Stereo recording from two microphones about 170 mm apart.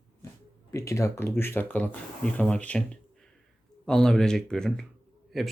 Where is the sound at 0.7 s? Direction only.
15° left (ahead or behind).